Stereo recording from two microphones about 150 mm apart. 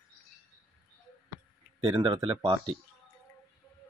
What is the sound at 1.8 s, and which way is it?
Speech, 30° right (ahead or behind).